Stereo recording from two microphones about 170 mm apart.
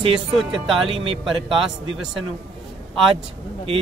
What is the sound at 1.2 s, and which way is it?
Speech, centre (ahead or behind).